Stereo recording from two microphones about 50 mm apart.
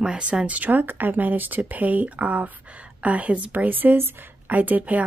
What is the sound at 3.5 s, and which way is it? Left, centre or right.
Speech, right.